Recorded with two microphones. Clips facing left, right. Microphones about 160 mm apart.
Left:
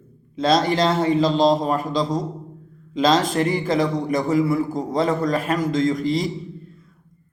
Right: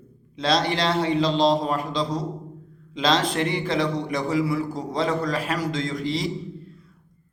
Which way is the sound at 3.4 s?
Centre (ahead or behind).